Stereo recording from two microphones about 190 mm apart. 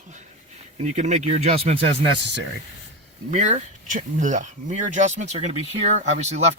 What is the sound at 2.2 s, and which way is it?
Speech, 65° right (ahead or behind).